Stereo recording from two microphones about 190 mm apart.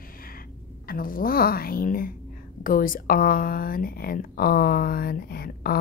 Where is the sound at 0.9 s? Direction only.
50° left (ahead or behind).